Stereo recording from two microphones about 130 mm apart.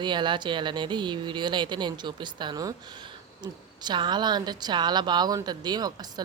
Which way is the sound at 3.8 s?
35° right (ahead or behind).